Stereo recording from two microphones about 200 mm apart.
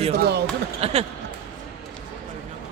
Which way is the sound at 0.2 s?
55° right (ahead or behind).